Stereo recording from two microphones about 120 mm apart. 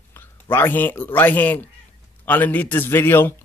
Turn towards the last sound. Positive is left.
turn(degrees=20)  # may be behind; listen again after turning